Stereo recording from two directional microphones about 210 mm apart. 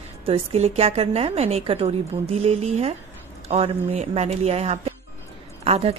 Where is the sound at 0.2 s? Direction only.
30° right (ahead or behind).